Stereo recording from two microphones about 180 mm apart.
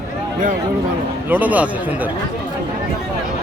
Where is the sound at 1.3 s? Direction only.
10° right (ahead or behind).